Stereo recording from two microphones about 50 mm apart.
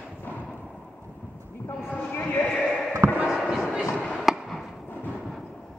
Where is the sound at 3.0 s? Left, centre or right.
Right.